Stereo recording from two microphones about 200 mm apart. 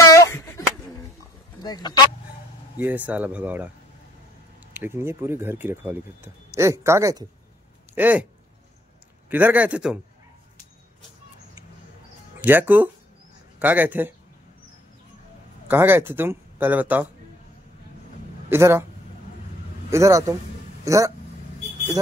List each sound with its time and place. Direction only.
0.0 s a sound: 15° left (ahead or behind)
1.6 s a sound: 20° left (ahead or behind)
2.8 s speech: 10° right (ahead or behind)
4.7 s speech: 10° right (ahead or behind)
9.3 s speech: 10° right (ahead or behind)
12.4 s speech: 10° right (ahead or behind)
15.7 s speech: 10° right (ahead or behind)
18.5 s speech: 10° right (ahead or behind)
19.9 s speech: 15° right (ahead or behind)